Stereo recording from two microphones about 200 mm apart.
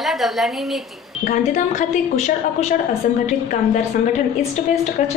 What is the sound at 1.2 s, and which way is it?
A woman's voice, 40° left (ahead or behind).